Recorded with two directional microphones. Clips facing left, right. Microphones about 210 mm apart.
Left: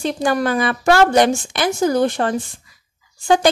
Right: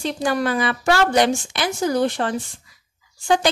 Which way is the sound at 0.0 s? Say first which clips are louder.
Left 3 dB; 45° left (ahead or behind).